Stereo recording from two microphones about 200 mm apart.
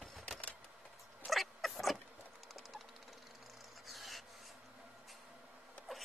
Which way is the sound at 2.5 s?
Centre (ahead or behind).